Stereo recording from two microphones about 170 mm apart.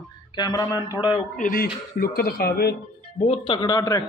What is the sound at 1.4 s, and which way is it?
Speech, 60° left (ahead or behind).